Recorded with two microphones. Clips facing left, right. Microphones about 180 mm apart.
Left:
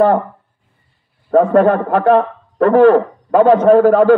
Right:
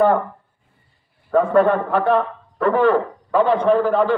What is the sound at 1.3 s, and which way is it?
A man's voice, 40° left (ahead or behind).